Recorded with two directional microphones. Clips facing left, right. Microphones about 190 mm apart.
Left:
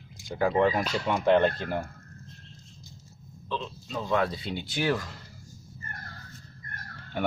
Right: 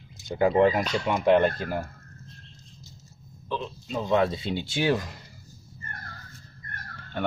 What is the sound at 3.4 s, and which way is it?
Speech, 15° right (ahead or behind).